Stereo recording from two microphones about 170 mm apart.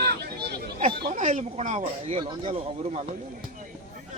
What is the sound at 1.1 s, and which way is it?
Speech, 45° right (ahead or behind).